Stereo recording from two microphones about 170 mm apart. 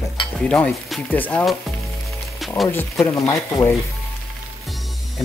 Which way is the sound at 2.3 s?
Centre (ahead or behind).